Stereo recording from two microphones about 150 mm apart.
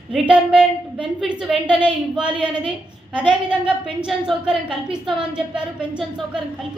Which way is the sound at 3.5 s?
5° right (ahead or behind).